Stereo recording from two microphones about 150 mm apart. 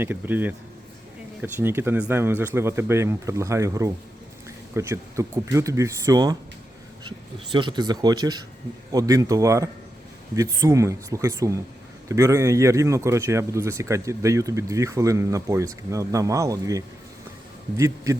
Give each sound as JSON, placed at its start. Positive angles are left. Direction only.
{"t": 0.0, "sound": "speech", "side_deg": -10}
{"t": 7.5, "sound": "speech", "side_deg": -30}